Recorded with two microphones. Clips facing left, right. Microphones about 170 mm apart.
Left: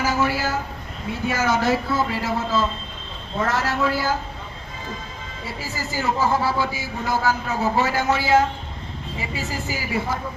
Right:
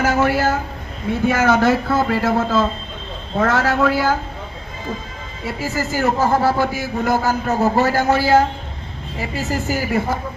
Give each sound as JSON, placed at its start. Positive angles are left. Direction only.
{"t": 0.0, "sound": "a sound", "side_deg": -55}
{"t": 1.2, "sound": "a man's voice", "side_deg": -55}
{"t": 5.5, "sound": "a man's voice", "side_deg": -50}